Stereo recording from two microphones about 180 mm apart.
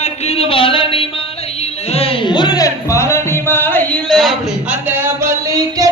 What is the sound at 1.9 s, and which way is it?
Music, 35° left (ahead or behind).